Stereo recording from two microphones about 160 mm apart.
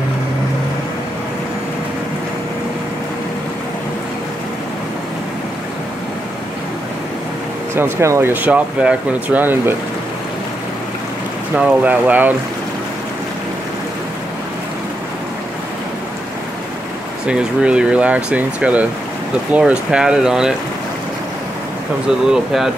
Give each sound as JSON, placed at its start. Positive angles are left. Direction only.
{"t": 7.7, "sound": "speech", "side_deg": -15}
{"t": 11.5, "sound": "speech", "side_deg": -10}
{"t": 17.3, "sound": "speech", "side_deg": -5}
{"t": 22.2, "sound": "speech", "side_deg": 0}